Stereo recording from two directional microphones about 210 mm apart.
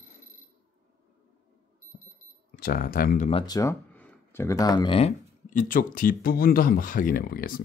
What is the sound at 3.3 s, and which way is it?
Speech, 20° left (ahead or behind).